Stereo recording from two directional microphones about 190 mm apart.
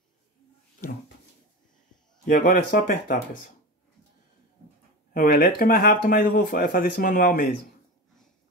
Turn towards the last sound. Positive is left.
turn(degrees=50)  # may be behind; listen again after turning